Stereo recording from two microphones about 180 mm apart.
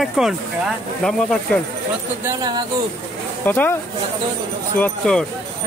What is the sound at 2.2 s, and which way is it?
Speech, 20° right (ahead or behind).